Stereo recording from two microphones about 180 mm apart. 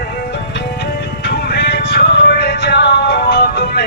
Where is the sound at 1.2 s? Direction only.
70° left (ahead or behind).